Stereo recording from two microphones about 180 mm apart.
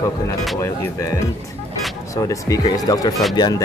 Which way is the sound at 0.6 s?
15° left (ahead or behind).